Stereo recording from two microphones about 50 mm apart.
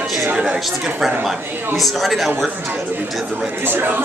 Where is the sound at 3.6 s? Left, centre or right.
Right.